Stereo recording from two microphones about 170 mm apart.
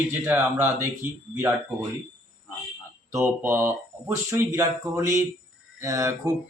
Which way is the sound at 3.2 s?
15° right (ahead or behind).